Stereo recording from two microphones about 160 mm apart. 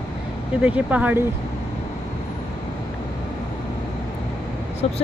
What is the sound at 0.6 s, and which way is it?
Speech, 10° right (ahead or behind).